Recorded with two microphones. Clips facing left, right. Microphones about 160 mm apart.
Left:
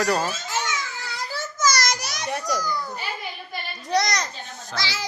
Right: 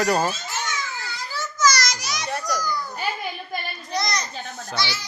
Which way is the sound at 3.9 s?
85° left.